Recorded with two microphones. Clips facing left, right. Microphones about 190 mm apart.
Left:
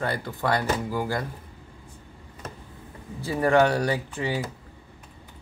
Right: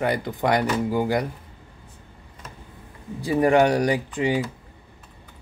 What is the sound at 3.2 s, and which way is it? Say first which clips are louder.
Speech: right 3 dB; 15° right (ahead or behind).